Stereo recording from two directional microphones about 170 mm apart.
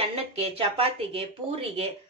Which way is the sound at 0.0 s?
35° right (ahead or behind).